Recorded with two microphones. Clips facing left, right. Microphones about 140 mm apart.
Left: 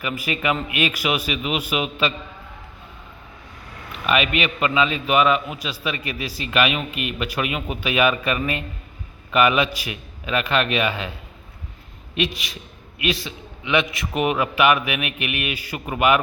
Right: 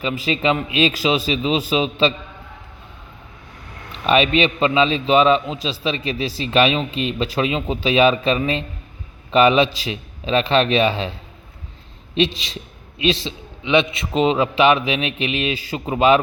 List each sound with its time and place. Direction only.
0.0 s a man's voice: 25° right (ahead or behind)
4.0 s a man's voice: 30° right (ahead or behind)
12.1 s a man's voice: 25° right (ahead or behind)